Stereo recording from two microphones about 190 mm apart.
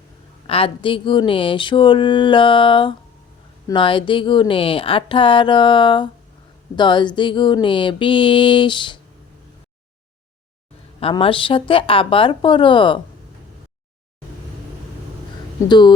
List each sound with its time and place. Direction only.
0.4 s speech: 30° left (ahead or behind)
11.0 s speech: 30° left (ahead or behind)